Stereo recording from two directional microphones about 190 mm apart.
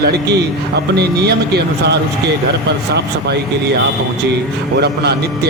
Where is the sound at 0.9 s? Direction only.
60° right (ahead or behind).